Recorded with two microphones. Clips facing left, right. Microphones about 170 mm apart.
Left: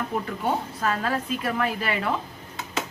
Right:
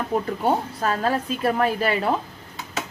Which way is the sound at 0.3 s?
35° right (ahead or behind).